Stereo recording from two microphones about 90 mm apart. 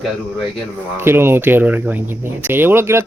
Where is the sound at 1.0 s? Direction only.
25° right (ahead or behind).